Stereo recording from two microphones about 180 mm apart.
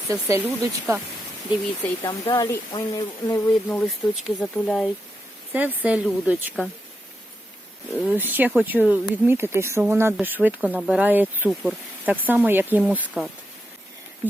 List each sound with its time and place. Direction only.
0.1 s speech: 15° right (ahead or behind)
1.5 s speech: 25° left (ahead or behind)
3.7 s speech: 5° left (ahead or behind)
5.5 s speech: 10° right (ahead or behind)
8.0 s speech: 10° right (ahead or behind)